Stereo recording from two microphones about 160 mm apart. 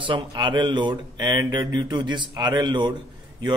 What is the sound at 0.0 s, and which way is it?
A man's voice, 30° right (ahead or behind).